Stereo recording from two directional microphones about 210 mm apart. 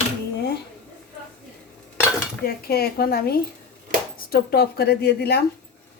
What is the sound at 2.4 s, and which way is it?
A woman's voice, 50° left (ahead or behind).